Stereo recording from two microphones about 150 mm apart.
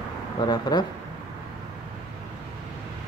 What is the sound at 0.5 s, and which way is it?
Speech, 30° left (ahead or behind).